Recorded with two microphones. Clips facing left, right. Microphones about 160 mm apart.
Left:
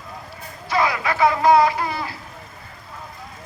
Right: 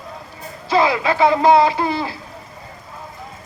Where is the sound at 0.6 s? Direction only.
25° right (ahead or behind).